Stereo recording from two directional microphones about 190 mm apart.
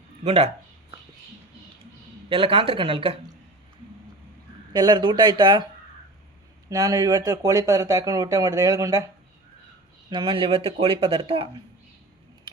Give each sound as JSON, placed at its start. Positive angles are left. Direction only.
{"t": 0.3, "sound": "a sound", "side_deg": -35}
{"t": 2.3, "sound": "speech", "side_deg": -25}
{"t": 4.7, "sound": "speech", "side_deg": -25}
{"t": 6.7, "sound": "speech", "side_deg": -20}
{"t": 10.1, "sound": "speech", "side_deg": -25}